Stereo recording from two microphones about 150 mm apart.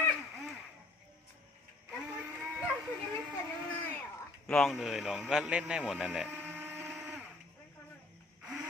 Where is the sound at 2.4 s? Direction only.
10° right (ahead or behind).